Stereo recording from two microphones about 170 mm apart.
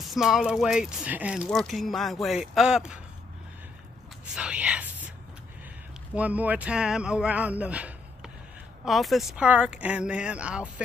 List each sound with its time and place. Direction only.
0.0 s speech: centre (ahead or behind)
4.4 s whispering: 5° right (ahead or behind)
6.1 s speech: 10° right (ahead or behind)